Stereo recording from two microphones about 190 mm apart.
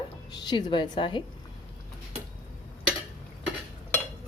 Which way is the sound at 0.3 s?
20° left (ahead or behind).